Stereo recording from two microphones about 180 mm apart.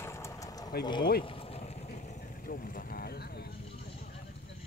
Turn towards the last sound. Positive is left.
turn(degrees=60)  # may be behind; listen again after turning